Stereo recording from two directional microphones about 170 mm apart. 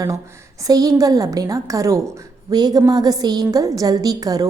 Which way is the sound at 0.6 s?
20° right (ahead or behind).